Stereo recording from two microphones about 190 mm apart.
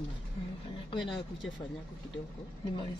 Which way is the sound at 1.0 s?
Centre (ahead or behind).